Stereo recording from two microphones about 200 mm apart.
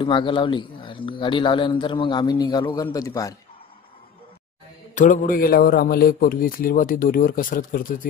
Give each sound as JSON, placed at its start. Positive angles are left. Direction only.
{"t": 0.0, "sound": "speech", "side_deg": 25}
{"t": 4.9, "sound": "a man's voice", "side_deg": 40}